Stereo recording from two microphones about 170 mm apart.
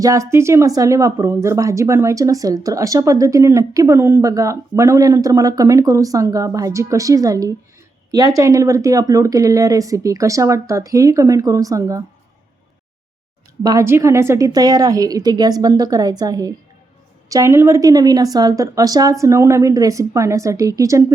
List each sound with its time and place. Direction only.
0.0 s speech: 20° right (ahead or behind)
13.6 s speech: 20° right (ahead or behind)